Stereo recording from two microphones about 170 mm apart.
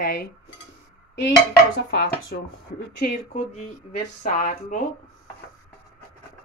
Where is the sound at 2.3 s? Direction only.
60° left (ahead or behind).